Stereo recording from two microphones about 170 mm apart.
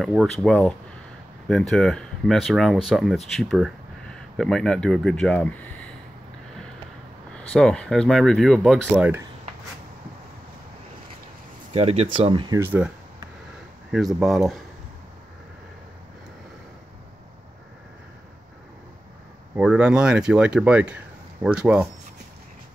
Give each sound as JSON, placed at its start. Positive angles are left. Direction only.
{"t": 0.0, "sound": "speech", "side_deg": 0}
{"t": 7.5, "sound": "speech", "side_deg": 5}
{"t": 11.7, "sound": "speech", "side_deg": -40}
{"t": 12.5, "sound": "speech", "side_deg": -10}
{"t": 13.9, "sound": "speech", "side_deg": 0}
{"t": 19.5, "sound": "speech", "side_deg": -5}